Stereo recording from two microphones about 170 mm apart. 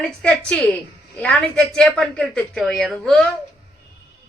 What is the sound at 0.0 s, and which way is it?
A woman's voice, 5° left (ahead or behind).